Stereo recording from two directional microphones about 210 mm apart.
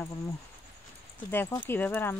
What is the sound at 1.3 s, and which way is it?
Speech, 10° left (ahead or behind).